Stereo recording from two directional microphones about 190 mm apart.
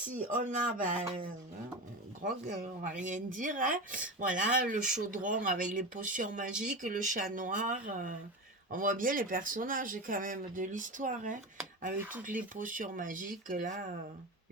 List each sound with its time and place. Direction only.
0.1 s speech: 45° right (ahead or behind)
2.2 s speech: 45° right (ahead or behind)
11.9 s speech: 10° right (ahead or behind)
12.5 s speech: 45° right (ahead or behind)